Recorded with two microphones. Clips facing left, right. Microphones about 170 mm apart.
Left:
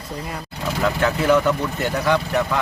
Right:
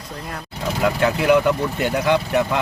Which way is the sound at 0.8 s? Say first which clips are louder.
Right 1 dB; 15° right (ahead or behind).